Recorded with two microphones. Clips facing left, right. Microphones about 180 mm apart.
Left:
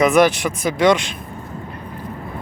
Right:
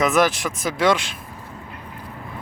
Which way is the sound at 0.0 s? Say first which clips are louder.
Left 5 dB; centre (ahead or behind).